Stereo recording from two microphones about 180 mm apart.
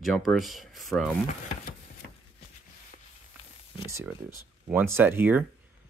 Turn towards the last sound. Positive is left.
turn(degrees=-10)  # may be behind; listen again after turning